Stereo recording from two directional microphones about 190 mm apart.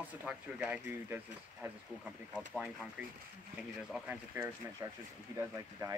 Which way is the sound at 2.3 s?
5° right (ahead or behind).